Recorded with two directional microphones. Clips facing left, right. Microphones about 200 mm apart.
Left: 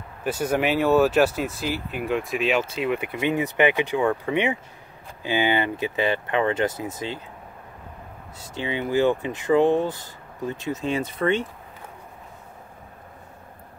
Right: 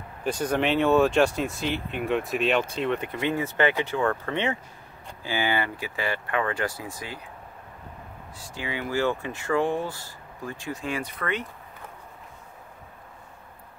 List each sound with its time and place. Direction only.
0.2 s speech: 5° left (ahead or behind); by 7.2 s 20° left (ahead or behind)
8.4 s speech: 25° left (ahead or behind)